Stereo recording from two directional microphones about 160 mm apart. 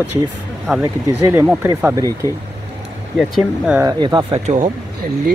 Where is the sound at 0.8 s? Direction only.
15° right (ahead or behind).